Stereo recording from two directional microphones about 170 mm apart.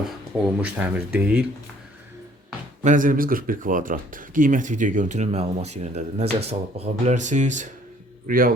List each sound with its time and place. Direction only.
0.6 s speech: 10° right (ahead or behind)
2.8 s speech: 50° right (ahead or behind)
8.3 s a man's voice: 60° right (ahead or behind)